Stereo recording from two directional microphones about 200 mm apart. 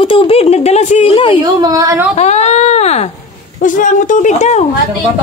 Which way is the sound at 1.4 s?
20° right (ahead or behind).